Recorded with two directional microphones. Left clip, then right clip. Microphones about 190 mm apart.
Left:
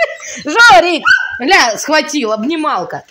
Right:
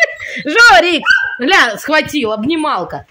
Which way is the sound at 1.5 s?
20° right (ahead or behind).